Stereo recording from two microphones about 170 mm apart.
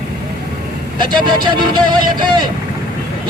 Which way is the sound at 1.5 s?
30° right (ahead or behind).